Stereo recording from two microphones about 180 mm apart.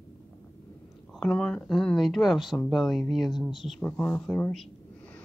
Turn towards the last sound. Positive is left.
turn(degrees=5)  # may be behind; listen again after turning